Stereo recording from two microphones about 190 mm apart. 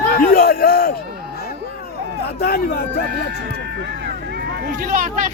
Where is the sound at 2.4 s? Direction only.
55° left (ahead or behind).